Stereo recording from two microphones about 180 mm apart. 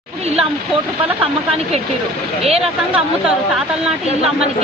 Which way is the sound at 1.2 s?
35° right (ahead or behind).